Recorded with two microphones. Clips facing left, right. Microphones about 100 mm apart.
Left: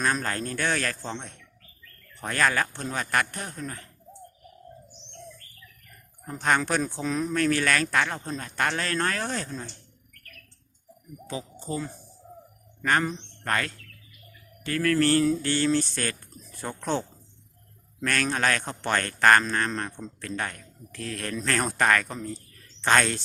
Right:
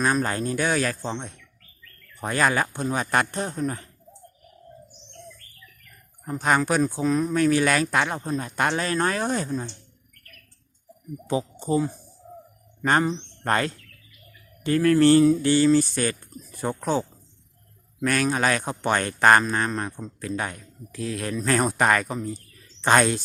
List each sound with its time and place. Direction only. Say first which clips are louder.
0.0 s a man's voice: right 4 dB; 10° right (ahead or behind)
6.2 s a man's voice: right 3 dB; 5° right (ahead or behind)
7.3 s a man's voice: right 2 dB; 15° right (ahead or behind)
11.3 s a man's voice: right 9 dB; 20° right (ahead or behind)